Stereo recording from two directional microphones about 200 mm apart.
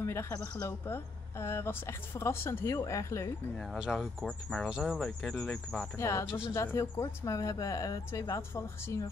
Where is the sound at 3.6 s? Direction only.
Centre (ahead or behind).